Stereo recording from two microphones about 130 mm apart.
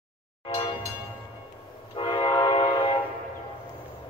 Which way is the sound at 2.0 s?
40° left (ahead or behind).